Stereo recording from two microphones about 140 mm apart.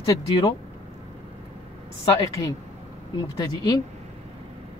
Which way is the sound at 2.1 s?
25° left (ahead or behind).